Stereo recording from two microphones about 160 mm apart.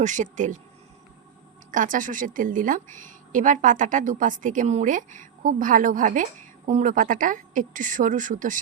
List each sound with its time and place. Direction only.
0.0 s speech: 50° right (ahead or behind)
1.7 s a woman's voice: 55° right (ahead or behind)